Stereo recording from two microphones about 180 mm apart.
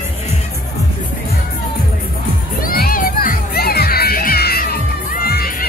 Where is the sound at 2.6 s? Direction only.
55° left (ahead or behind).